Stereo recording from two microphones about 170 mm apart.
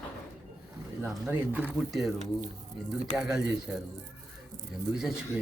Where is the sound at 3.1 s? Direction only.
5° right (ahead or behind).